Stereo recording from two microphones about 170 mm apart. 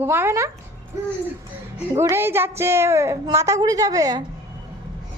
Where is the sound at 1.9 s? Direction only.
15° right (ahead or behind).